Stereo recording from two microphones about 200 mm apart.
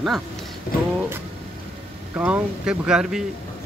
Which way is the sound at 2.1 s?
10° right (ahead or behind).